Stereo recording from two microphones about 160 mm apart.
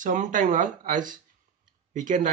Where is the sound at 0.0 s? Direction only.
55° right (ahead or behind).